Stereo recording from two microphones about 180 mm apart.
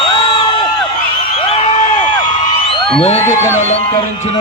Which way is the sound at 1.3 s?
35° left (ahead or behind).